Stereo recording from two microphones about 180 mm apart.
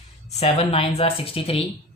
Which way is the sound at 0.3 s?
35° left (ahead or behind).